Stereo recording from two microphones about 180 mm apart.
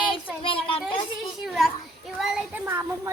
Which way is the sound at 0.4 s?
30° left (ahead or behind).